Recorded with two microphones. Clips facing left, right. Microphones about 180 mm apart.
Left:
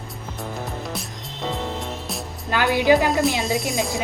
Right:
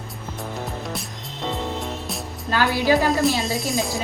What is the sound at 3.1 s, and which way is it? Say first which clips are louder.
Speech: even; centre (ahead or behind).